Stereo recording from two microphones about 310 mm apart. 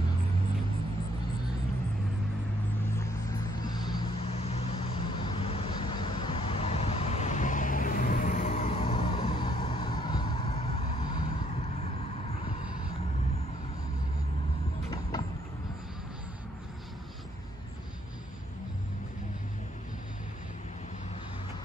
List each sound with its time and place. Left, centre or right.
3.6 s vehicle: centre
14.9 s vehicle: centre